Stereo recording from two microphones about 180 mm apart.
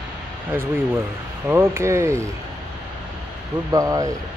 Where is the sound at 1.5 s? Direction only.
15° right (ahead or behind).